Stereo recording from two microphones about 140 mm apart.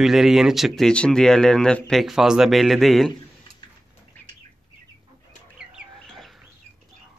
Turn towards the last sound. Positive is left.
turn(degrees=-5)  # may be behind; listen again after turning